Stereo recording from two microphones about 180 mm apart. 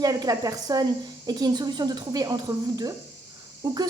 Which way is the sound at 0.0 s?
20° right (ahead or behind).